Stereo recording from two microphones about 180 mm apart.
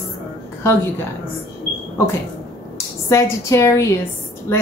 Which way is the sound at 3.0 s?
15° left (ahead or behind).